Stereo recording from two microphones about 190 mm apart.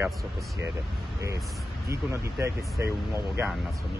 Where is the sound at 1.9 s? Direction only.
15° right (ahead or behind).